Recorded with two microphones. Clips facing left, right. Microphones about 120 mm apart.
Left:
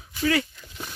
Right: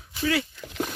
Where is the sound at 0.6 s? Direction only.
75° right (ahead or behind).